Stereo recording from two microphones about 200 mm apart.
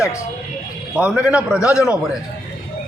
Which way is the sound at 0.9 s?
5° right (ahead or behind).